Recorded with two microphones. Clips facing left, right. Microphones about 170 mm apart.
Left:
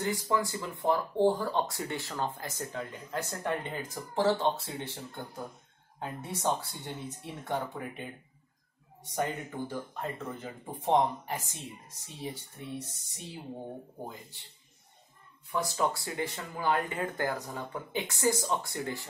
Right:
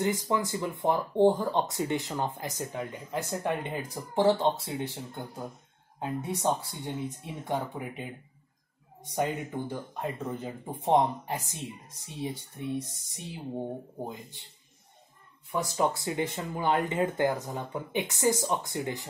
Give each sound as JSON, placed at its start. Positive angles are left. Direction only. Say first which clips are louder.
{"t": 0.0, "sound": "speech", "louder": "right 2 dB", "side_deg": -20}
{"t": 9.1, "sound": "speech", "louder": "right 3 dB", "side_deg": -15}
{"t": 15.5, "sound": "speech", "louder": "right 2 dB", "side_deg": -20}